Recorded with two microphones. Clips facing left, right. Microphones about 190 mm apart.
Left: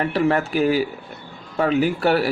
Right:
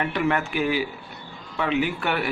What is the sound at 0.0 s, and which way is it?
Speech, 35° left (ahead or behind).